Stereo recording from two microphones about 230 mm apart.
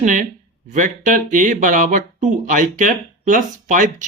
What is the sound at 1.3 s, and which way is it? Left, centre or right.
Speech, right.